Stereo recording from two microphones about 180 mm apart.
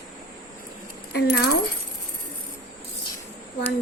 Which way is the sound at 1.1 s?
65° left (ahead or behind).